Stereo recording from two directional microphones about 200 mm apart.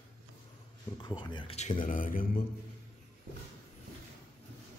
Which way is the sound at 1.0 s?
20° left (ahead or behind).